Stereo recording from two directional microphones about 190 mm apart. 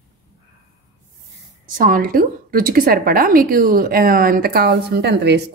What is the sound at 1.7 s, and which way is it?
A woman's voice, 45° right (ahead or behind).